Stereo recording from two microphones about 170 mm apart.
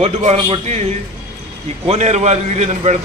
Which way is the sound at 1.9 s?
40° right (ahead or behind).